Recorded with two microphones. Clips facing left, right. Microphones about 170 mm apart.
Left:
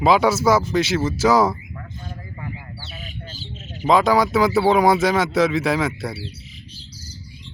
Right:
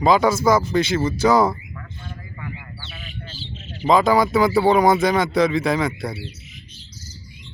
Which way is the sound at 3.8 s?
Centre (ahead or behind).